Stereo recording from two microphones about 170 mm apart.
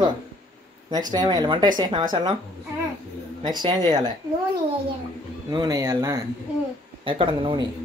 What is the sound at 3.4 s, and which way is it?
Speech, 25° right (ahead or behind).